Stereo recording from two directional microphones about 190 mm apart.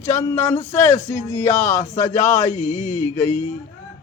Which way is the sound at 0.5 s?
40° left (ahead or behind).